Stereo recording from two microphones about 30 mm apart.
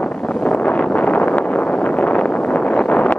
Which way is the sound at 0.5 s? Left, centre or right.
Left.